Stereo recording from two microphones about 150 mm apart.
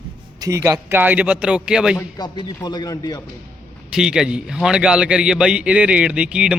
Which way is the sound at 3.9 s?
5° right (ahead or behind).